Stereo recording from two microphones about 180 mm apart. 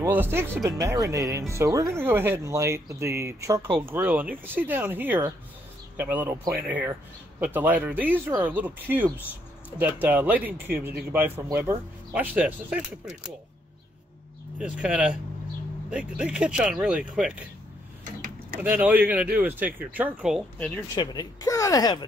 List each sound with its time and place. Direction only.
0.0 s speech: 10° right (ahead or behind)
3.8 s speech: 10° right (ahead or behind)
14.6 s speech: 5° right (ahead or behind)
18.6 s speech: 10° right (ahead or behind)
20.5 s speech: 10° left (ahead or behind)
20.9 s speech: 25° left (ahead or behind)